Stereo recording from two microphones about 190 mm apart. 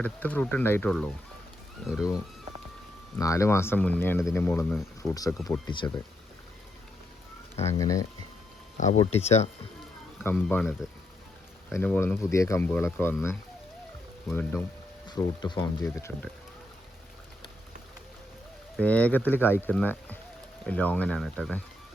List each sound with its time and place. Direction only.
0.0 s speech: 10° left (ahead or behind)
3.2 s speech: 15° left (ahead or behind)
7.6 s speech: 15° left (ahead or behind)
8.8 s speech: 35° left (ahead or behind)
10.2 s speech: 10° left (ahead or behind)
14.3 s speech: 10° left (ahead or behind)
15.0 s speech: 20° left (ahead or behind)
18.8 s speech: 5° left (ahead or behind)